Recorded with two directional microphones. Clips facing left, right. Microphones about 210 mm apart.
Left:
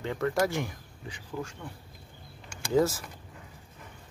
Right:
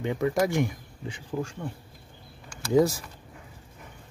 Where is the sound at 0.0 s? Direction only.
15° right (ahead or behind).